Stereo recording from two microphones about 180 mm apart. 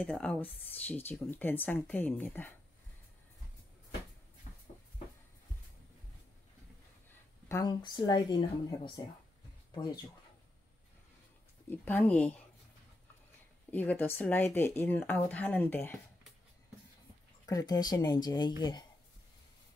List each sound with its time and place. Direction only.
0.0 s speech: 5° left (ahead or behind)
7.1 s a woman's voice: 15° left (ahead or behind)
11.7 s speech: 10° left (ahead or behind)
13.7 s speech: 10° left (ahead or behind)
17.5 s speech: 20° left (ahead or behind)